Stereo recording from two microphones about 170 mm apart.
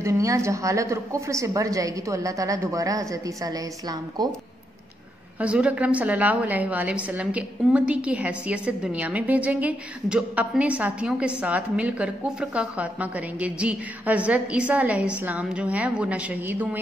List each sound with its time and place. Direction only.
0.0 s a woman's voice: 20° right (ahead or behind)
5.4 s a woman's voice: 5° right (ahead or behind)